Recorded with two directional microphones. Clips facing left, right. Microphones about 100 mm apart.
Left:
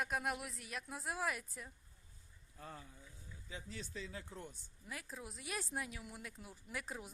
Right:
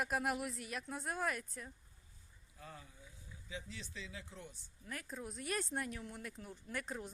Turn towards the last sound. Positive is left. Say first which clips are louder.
# right 3 dB
turn(degrees=5)  # may be behind; listen again after turning